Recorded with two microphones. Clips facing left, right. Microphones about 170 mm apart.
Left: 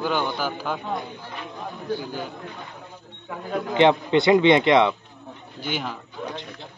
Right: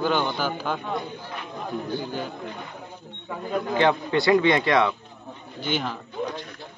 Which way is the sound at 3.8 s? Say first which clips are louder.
Left 5 dB; 20° left (ahead or behind).